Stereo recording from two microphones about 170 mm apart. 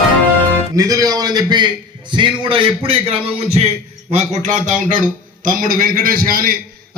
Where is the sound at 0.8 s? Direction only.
20° right (ahead or behind).